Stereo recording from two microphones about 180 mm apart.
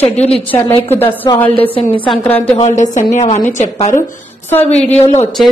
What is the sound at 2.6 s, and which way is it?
A woman's voice, 40° left (ahead or behind).